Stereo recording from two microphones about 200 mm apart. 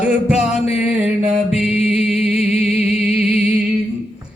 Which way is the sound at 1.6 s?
5° right (ahead or behind).